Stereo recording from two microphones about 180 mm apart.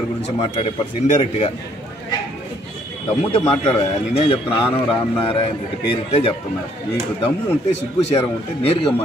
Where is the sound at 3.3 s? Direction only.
25° left (ahead or behind).